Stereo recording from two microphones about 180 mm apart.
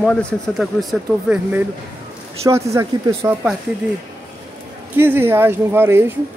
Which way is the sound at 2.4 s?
15° right (ahead or behind).